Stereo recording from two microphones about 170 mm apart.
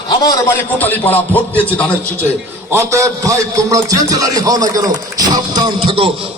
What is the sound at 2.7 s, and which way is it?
A man's voice, 20° right (ahead or behind).